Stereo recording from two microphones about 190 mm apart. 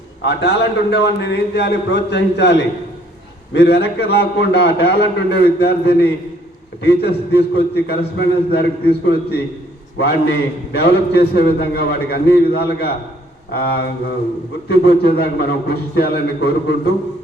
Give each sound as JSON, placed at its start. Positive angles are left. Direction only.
{"t": 0.3, "sound": "a man's voice", "side_deg": 60}
{"t": 15.0, "sound": "a man's voice", "side_deg": 55}